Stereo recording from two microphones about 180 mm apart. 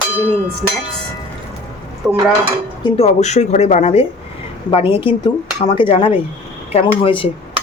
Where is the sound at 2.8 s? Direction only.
30° left (ahead or behind).